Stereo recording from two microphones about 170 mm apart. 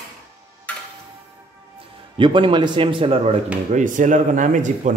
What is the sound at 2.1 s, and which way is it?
Speech, 30° right (ahead or behind).